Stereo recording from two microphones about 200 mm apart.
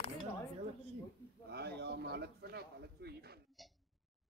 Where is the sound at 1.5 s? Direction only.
55° right (ahead or behind).